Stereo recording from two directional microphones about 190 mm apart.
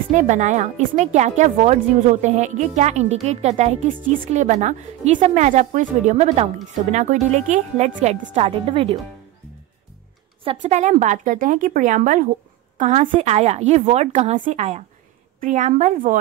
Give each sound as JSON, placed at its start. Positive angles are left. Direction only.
{"t": 0.1, "sound": "speech", "side_deg": -40}
{"t": 10.4, "sound": "a woman's voice", "side_deg": -35}